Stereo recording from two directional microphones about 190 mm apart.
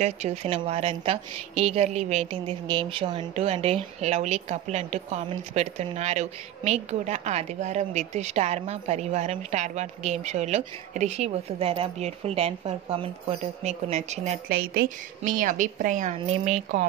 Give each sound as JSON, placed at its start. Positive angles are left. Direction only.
{"t": 0.0, "sound": "speech", "side_deg": -35}
{"t": 14.5, "sound": "a woman's voice", "side_deg": -50}